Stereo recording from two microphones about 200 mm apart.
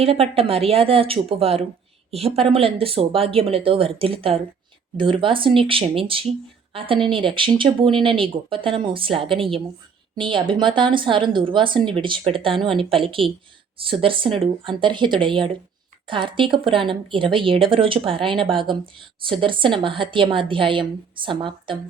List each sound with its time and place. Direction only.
0.0 s speech: 30° right (ahead or behind)